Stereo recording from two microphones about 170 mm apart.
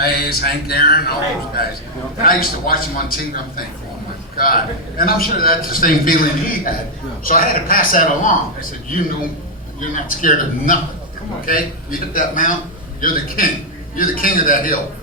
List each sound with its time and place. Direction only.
0.0 s a man's voice: 65° left (ahead or behind)
2.2 s a man's voice: 60° left (ahead or behind)